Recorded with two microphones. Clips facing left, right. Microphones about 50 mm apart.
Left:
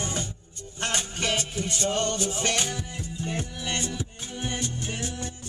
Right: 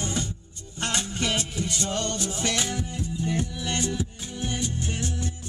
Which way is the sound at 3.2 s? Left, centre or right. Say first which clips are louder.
Right 2 dB; left.